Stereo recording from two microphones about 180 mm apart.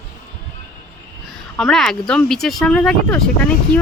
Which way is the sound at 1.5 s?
5° left (ahead or behind).